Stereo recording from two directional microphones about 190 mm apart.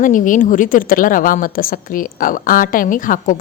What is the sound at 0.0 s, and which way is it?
Speech, 45° left (ahead or behind).